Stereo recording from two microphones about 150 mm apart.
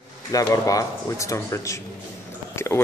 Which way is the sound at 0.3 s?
25° left (ahead or behind).